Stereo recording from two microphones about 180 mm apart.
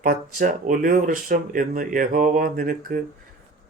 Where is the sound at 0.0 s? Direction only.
50° right (ahead or behind).